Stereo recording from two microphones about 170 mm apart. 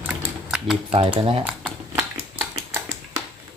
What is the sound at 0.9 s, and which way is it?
Speech, 35° right (ahead or behind).